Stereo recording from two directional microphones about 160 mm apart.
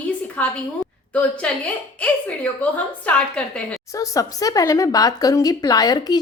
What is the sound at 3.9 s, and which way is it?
Speech, 20° left (ahead or behind).